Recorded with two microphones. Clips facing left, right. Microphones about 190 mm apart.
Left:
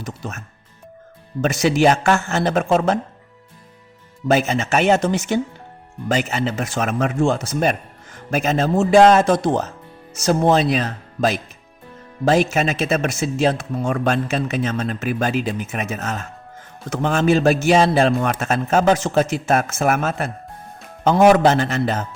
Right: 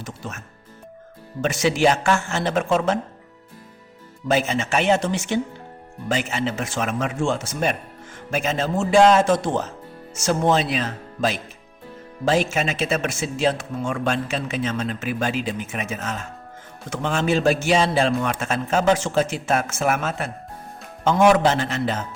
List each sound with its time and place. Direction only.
0.0 s a man's voice: 40° left (ahead or behind)
4.3 s a man's voice: 45° left (ahead or behind)